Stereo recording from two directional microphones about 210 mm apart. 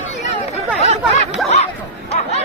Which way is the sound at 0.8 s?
30° right (ahead or behind).